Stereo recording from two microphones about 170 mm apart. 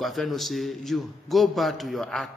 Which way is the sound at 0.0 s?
Centre (ahead or behind).